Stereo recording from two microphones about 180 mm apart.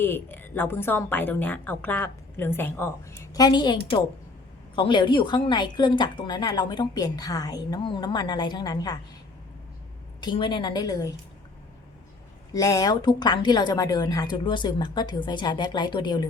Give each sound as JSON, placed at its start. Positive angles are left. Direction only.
{"t": 0.0, "sound": "a woman's voice", "side_deg": 10}
{"t": 3.3, "sound": "a woman's voice", "side_deg": 25}
{"t": 10.2, "sound": "a woman's voice", "side_deg": 25}
{"t": 12.5, "sound": "a woman's voice", "side_deg": 20}